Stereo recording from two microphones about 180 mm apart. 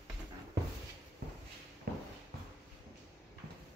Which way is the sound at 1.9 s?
60° right (ahead or behind).